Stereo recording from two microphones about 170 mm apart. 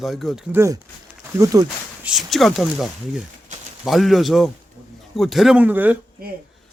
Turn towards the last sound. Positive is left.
turn(degrees=-10)  # may be behind; listen again after turning